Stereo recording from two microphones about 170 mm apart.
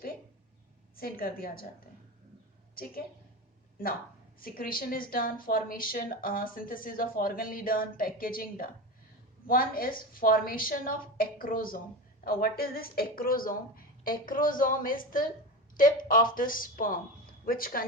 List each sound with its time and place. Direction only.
0.9 s speech: 60° left (ahead or behind)
2.8 s speech: 60° left (ahead or behind)